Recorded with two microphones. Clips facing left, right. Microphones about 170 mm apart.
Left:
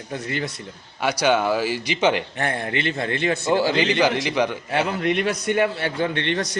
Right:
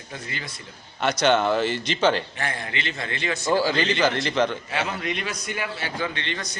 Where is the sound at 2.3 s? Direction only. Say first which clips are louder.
Left 6 dB; 55° left (ahead or behind).